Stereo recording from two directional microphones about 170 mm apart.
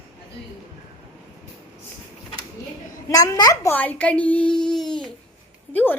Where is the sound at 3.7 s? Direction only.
10° left (ahead or behind).